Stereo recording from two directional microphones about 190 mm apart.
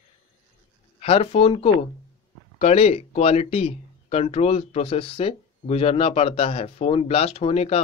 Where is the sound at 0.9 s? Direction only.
30° left (ahead or behind).